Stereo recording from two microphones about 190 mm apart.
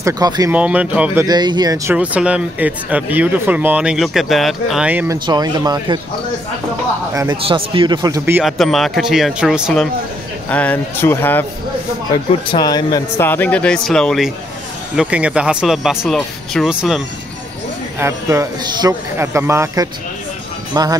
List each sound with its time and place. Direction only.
0.0 s speech: 15° right (ahead or behind)
1.2 s speech: 20° right (ahead or behind)
2.0 s speech: 5° right (ahead or behind)
7.4 s speech: 30° right (ahead or behind)
8.4 s speech: centre (ahead or behind)
12.1 s speech: 20° left (ahead or behind)
13.3 s speech: 10° left (ahead or behind)
17.9 s speech: 15° right (ahead or behind)